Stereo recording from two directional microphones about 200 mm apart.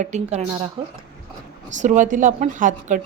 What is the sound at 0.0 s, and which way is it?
Speech, 35° right (ahead or behind).